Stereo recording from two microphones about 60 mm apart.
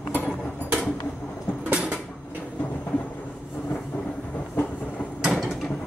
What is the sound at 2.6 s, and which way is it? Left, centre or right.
Vehicle, left.